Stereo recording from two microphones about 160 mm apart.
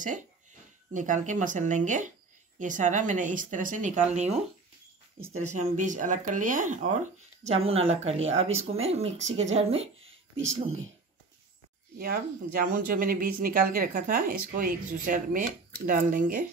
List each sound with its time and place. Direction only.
0.9 s speech: 50° right (ahead or behind)
5.4 s speech: 50° right (ahead or behind)
7.4 s speech: 40° right (ahead or behind)
12.0 s speech: 70° right (ahead or behind)